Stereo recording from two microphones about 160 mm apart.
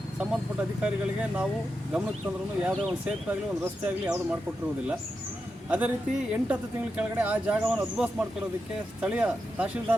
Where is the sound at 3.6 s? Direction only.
15° right (ahead or behind).